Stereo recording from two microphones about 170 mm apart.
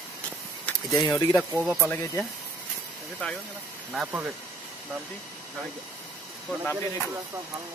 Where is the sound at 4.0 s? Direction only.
10° right (ahead or behind).